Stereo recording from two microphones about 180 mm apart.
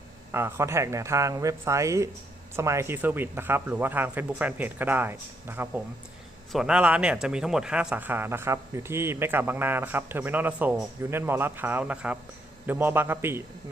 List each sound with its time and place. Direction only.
0.3 s speech: 15° right (ahead or behind)